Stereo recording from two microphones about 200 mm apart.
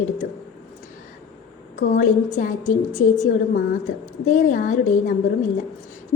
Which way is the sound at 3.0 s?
90° left.